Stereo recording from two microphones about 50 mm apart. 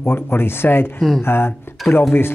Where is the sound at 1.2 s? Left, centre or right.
Left.